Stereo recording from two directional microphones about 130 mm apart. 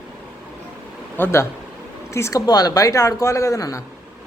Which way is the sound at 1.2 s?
15° left (ahead or behind).